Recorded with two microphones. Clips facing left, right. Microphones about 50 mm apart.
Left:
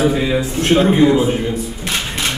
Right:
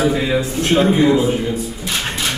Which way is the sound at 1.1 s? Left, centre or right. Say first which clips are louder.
Left 1 dB; left.